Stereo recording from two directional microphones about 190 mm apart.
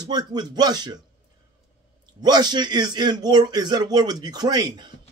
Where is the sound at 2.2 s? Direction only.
20° right (ahead or behind).